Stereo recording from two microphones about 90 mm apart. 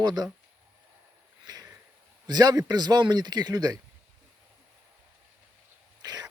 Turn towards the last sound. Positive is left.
turn(degrees=-50)  # may be behind; listen again after turning